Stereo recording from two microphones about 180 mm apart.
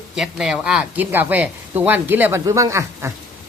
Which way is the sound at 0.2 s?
5° right (ahead or behind).